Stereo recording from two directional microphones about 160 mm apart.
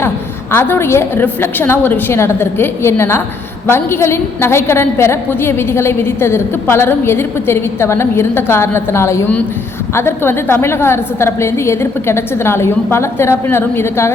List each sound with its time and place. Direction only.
0.5 s a woman's voice: 15° left (ahead or behind)